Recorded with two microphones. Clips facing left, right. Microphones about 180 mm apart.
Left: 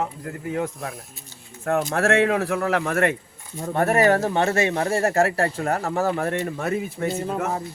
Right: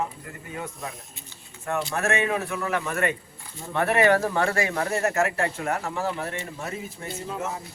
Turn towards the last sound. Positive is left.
turn(degrees=60)  # may be behind; listen again after turning